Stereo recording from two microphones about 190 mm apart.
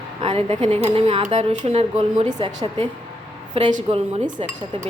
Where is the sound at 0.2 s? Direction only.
30° right (ahead or behind).